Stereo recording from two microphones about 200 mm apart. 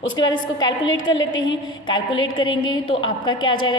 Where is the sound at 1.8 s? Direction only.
20° left (ahead or behind).